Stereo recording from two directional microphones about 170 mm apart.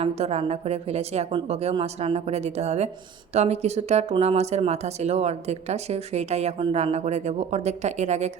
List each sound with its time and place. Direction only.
0.0 s speech: 40° right (ahead or behind)